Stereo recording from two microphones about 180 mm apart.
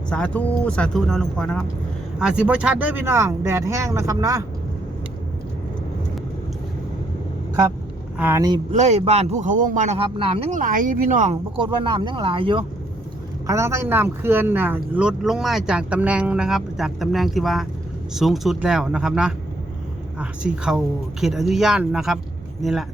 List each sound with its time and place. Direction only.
0.1 s speech: 5° left (ahead or behind); by 4.4 s 20° right (ahead or behind)
8.2 s speech: 15° right (ahead or behind)
8.7 s speech: 35° right (ahead or behind)
10.5 s speech: 50° right (ahead or behind)
11.5 s speech: 25° right (ahead or behind)
13.5 s speech: 15° right (ahead or behind)